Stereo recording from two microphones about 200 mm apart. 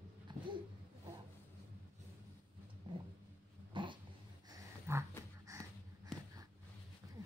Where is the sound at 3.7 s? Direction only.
25° right (ahead or behind).